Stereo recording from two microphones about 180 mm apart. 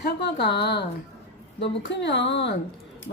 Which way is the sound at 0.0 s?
70° left (ahead or behind).